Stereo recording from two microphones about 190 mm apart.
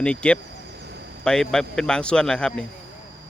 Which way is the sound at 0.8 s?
60° right (ahead or behind).